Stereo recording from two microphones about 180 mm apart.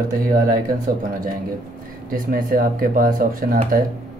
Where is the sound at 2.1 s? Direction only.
50° right (ahead or behind).